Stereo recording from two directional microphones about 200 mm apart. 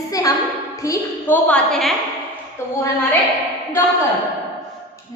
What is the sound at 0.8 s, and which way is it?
A woman's voice, 15° left (ahead or behind).